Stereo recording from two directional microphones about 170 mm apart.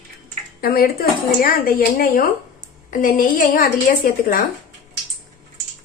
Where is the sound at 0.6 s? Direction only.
60° left (ahead or behind).